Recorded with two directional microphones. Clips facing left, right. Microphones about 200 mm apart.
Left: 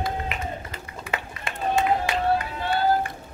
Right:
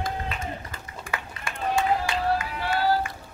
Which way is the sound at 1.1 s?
20° left (ahead or behind).